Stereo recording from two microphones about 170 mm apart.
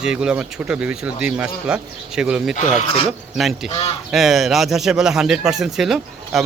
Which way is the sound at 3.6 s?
35° left (ahead or behind).